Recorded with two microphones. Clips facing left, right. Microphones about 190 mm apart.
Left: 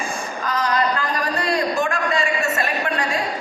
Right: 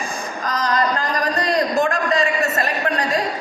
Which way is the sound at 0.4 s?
40° right (ahead or behind).